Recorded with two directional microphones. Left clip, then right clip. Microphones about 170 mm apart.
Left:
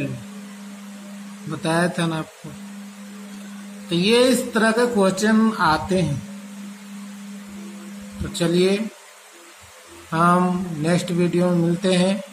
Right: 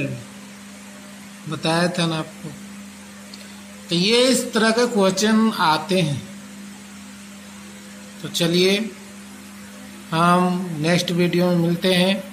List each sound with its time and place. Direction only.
1.5 s speech: 15° right (ahead or behind)
3.9 s speech: 15° right (ahead or behind)
8.3 s speech: 15° right (ahead or behind)
10.1 s speech: 10° right (ahead or behind)